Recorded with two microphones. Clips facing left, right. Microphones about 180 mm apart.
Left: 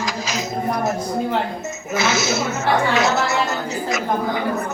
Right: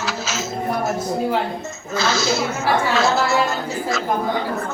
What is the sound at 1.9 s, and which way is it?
A woman's voice, 20° left (ahead or behind).